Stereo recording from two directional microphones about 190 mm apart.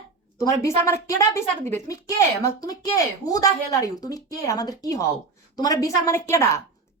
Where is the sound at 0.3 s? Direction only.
15° left (ahead or behind).